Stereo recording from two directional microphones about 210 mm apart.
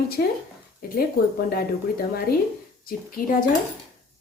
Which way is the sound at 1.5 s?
45° left (ahead or behind).